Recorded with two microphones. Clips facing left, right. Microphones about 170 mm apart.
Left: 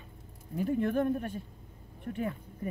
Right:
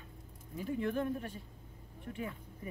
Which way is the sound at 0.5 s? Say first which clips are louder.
Left 6 dB; 55° left (ahead or behind).